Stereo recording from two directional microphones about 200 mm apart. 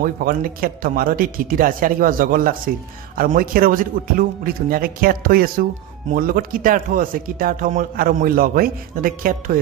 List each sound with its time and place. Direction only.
0.0 s speech: 45° right (ahead or behind)